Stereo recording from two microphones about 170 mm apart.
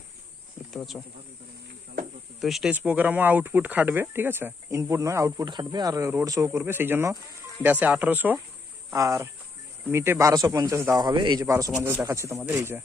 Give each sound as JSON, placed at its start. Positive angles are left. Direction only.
{"t": 0.7, "sound": "speech", "side_deg": 0}
{"t": 2.4, "sound": "speech", "side_deg": 0}